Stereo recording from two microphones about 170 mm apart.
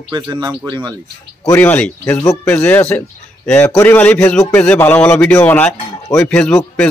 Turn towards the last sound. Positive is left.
turn(degrees=5)  # may be behind; listen again after turning